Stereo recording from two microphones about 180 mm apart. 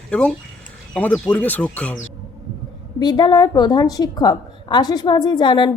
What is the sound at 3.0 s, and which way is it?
A woman's voice, 25° left (ahead or behind).